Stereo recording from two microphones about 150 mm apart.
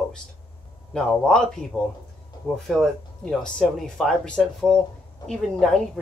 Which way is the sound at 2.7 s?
5° left (ahead or behind).